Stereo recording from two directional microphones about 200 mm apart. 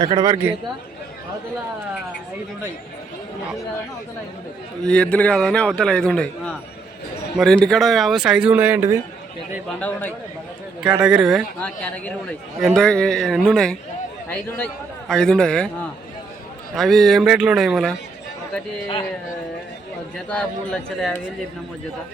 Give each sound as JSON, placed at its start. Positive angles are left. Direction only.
{"t": 0.0, "sound": "speech", "side_deg": -20}
{"t": 4.8, "sound": "a man's voice", "side_deg": 5}
{"t": 10.8, "sound": "a man's voice", "side_deg": -5}
{"t": 16.7, "sound": "a man's voice", "side_deg": 0}
{"t": 20.1, "sound": "a man's voice", "side_deg": 5}